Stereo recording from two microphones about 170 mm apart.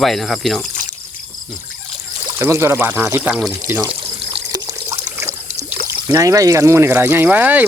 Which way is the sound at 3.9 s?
30° right (ahead or behind).